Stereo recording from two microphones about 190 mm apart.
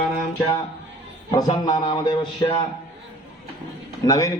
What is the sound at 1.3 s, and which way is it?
A man's voice, 20° left (ahead or behind).